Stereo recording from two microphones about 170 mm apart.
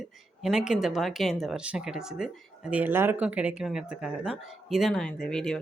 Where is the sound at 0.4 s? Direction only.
Centre (ahead or behind).